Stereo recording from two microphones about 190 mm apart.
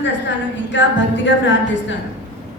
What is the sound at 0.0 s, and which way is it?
A woman's voice, 70° left (ahead or behind).